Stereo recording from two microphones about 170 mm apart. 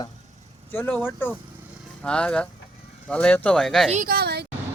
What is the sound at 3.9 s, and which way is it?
Speech, 55° right (ahead or behind).